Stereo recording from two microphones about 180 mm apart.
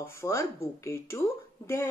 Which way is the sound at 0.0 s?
15° left (ahead or behind).